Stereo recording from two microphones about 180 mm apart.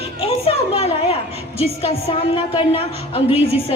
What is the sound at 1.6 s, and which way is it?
A woman's voice, 35° left (ahead or behind).